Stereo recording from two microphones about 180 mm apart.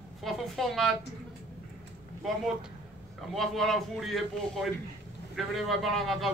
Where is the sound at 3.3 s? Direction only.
Centre (ahead or behind).